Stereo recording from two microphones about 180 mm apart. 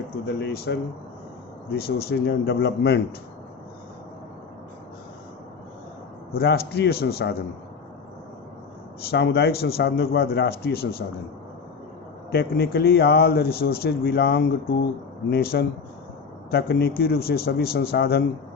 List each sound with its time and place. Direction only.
0.3 s speech: 65° left (ahead or behind)
6.3 s speech: 60° left (ahead or behind)
9.0 s speech: 65° left (ahead or behind)
12.3 s speech: 60° left (ahead or behind)